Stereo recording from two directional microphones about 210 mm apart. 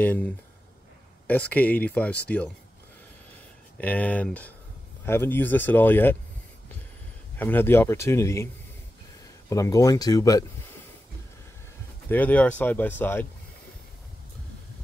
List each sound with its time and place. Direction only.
0.0 s speech: 10° left (ahead or behind)
3.7 s speech: 5° left (ahead or behind)
7.3 s speech: 10° left (ahead or behind)
9.5 s speech: 15° left (ahead or behind)
12.1 s speech: 10° left (ahead or behind)